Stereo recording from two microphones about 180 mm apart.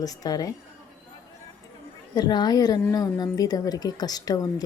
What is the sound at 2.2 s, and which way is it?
A woman's voice, 25° left (ahead or behind).